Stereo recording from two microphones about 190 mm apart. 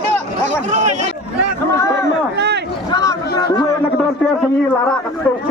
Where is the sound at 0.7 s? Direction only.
40° right (ahead or behind).